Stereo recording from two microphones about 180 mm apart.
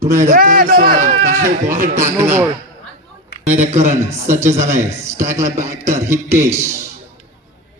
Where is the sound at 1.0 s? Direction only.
40° right (ahead or behind).